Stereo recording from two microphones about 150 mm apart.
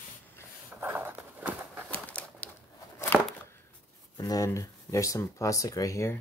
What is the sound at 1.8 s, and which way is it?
Bird, 10° left (ahead or behind).